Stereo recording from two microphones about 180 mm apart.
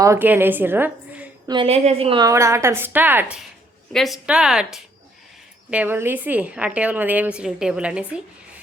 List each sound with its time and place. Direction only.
0.0 s a woman's voice: 15° right (ahead or behind)
1.5 s a woman's voice: 30° right (ahead or behind); by 8.0 s 5° right (ahead or behind)